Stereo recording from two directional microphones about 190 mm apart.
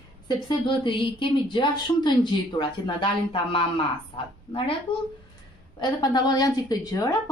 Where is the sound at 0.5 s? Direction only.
25° left (ahead or behind).